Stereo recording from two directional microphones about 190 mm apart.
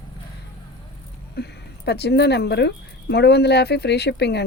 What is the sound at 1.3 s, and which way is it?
Speech, 60° left (ahead or behind).